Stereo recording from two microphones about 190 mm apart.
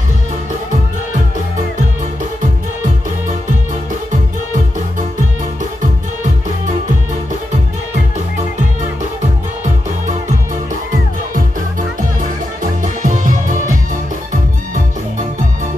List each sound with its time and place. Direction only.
12.8 s music: 40° right (ahead or behind)